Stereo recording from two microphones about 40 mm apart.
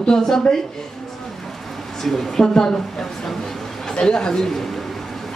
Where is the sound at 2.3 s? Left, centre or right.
Centre.